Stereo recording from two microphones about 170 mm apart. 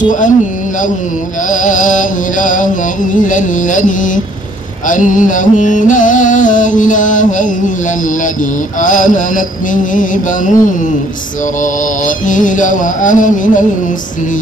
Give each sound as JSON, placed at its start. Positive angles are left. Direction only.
{"t": 0.0, "sound": "music", "side_deg": 50}
{"t": 1.5, "sound": "music", "side_deg": 50}
{"t": 8.8, "sound": "music", "side_deg": 50}
{"t": 12.3, "sound": "music", "side_deg": 50}